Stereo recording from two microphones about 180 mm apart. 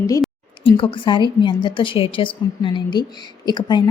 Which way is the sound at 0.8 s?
30° left (ahead or behind).